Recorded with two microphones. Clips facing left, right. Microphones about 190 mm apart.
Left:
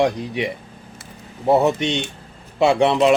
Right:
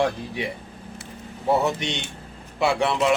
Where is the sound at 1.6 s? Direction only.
20° left (ahead or behind).